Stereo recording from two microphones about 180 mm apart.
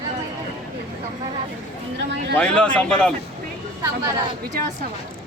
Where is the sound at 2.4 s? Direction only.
5° left (ahead or behind).